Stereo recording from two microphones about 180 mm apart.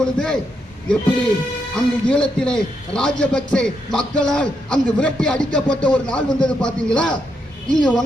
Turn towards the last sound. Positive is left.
turn(degrees=5)  # may be behind; listen again after turning